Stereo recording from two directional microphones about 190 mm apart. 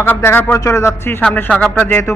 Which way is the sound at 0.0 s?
10° left (ahead or behind).